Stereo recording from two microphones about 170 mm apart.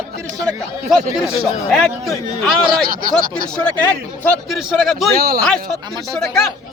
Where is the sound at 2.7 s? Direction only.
60° right (ahead or behind).